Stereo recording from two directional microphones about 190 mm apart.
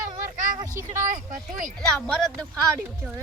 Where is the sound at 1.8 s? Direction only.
5° left (ahead or behind).